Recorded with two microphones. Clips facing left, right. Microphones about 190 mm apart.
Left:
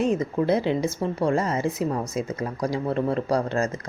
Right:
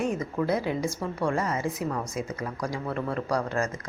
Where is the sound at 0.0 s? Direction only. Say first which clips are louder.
Left 5 dB; 25° left (ahead or behind).